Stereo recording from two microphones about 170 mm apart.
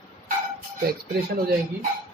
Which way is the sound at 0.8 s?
65° right (ahead or behind).